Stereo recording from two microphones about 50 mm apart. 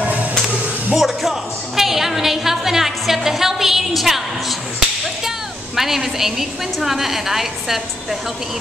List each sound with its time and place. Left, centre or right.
0.0 s a sound: right
0.9 s music: centre
5.8 s a woman's voice: centre